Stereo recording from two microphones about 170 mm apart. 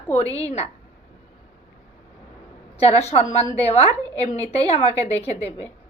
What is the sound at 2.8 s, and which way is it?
A woman's voice, 35° left (ahead or behind).